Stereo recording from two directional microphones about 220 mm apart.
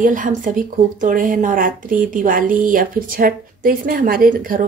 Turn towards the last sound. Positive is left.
turn(degrees=-40)  # may be behind; listen again after turning